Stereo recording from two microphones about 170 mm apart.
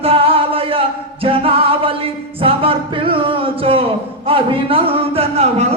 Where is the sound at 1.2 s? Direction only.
35° right (ahead or behind).